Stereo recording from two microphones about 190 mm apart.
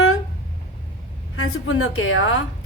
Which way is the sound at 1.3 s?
90° left.